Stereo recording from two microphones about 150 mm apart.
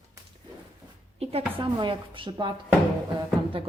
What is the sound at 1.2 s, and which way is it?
A woman's voice, 40° right (ahead or behind).